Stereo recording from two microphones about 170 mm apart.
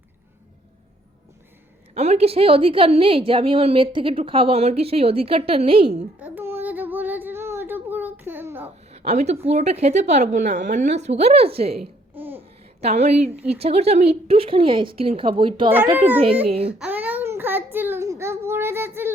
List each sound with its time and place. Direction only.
2.0 s a woman's voice: 40° right (ahead or behind)
6.1 s child singing: 10° right (ahead or behind)
8.9 s a woman's voice: 40° right (ahead or behind)
11.8 s babbling: 10° right (ahead or behind)
12.8 s a woman's voice: 40° right (ahead or behind)
16.7 s a sound: 10° right (ahead or behind)